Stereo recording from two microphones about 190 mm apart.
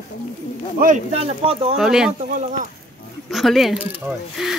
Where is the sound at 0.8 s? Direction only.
35° right (ahead or behind).